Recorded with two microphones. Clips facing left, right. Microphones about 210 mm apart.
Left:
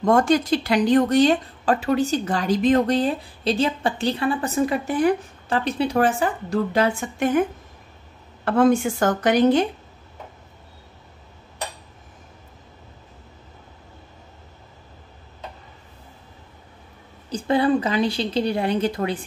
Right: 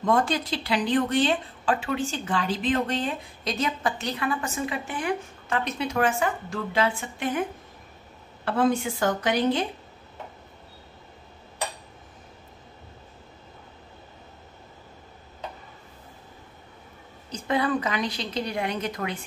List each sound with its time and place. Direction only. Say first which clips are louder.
0.0 s speech: left 6 dB; 45° left (ahead or behind)
8.5 s a woman's voice: left 6 dB; 45° left (ahead or behind)
17.3 s speech: left 6 dB; 30° left (ahead or behind)